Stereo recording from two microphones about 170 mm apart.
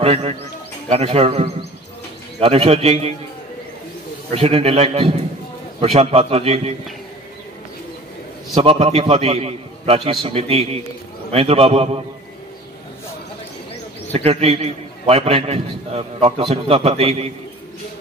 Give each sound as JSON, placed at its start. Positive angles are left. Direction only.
{"t": 0.0, "sound": "a man's voice", "side_deg": -35}
{"t": 4.3, "sound": "a man's voice", "side_deg": -35}
{"t": 8.5, "sound": "a man's voice", "side_deg": -35}
{"t": 14.1, "sound": "a man's voice", "side_deg": -35}